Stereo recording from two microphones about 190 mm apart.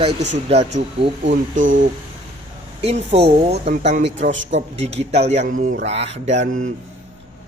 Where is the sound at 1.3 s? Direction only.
90° right.